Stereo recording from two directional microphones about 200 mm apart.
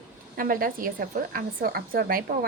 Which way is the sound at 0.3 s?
45° right (ahead or behind).